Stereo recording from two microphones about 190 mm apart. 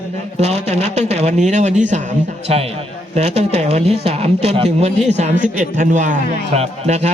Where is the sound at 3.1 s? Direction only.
35° right (ahead or behind).